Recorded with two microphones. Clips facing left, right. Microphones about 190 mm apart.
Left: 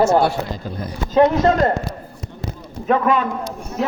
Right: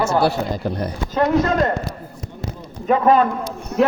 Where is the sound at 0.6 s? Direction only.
65° right (ahead or behind).